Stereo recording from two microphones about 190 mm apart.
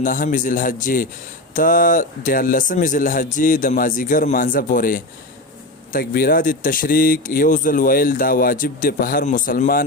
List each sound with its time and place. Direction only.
0.0 s speech: 45° left (ahead or behind)